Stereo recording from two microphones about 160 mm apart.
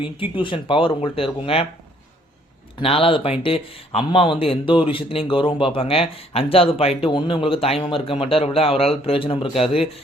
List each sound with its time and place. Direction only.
0.0 s speech: 30° left (ahead or behind)
2.7 s speech: 35° left (ahead or behind)